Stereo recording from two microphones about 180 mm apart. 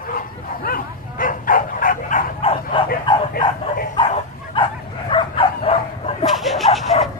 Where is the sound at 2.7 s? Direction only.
30° left (ahead or behind).